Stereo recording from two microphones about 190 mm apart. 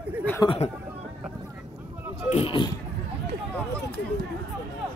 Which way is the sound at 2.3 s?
30° left (ahead or behind).